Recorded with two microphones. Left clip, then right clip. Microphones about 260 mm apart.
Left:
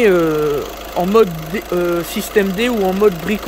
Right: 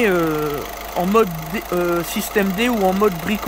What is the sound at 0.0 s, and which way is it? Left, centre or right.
Speech, centre.